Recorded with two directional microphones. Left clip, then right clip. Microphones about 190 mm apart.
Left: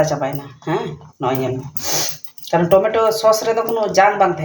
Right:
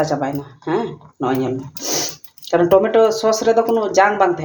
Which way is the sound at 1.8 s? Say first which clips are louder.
Left 1 dB; 40° right (ahead or behind).